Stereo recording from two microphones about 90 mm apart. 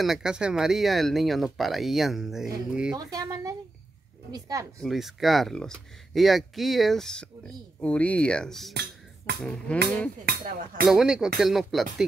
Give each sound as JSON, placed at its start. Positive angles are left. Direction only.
{"t": 0.0, "sound": "speech", "side_deg": -5}
{"t": 3.1, "sound": "speech", "side_deg": -40}
{"t": 4.8, "sound": "speech", "side_deg": 0}
{"t": 9.4, "sound": "music", "side_deg": 10}
{"t": 10.9, "sound": "speech", "side_deg": -5}